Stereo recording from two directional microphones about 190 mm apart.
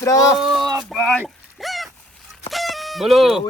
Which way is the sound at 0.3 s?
Centre (ahead or behind).